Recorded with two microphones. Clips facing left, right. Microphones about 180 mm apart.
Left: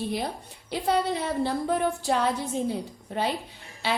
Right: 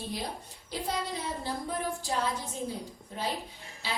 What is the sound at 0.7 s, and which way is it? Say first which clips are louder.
A woman's voice: left 8 dB; 65° left (ahead or behind).